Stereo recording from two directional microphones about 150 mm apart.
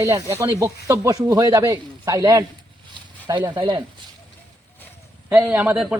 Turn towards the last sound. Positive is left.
turn(degrees=-10)  # may be behind; listen again after turning